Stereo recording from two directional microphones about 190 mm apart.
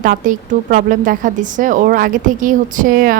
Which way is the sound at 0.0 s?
45° right (ahead or behind).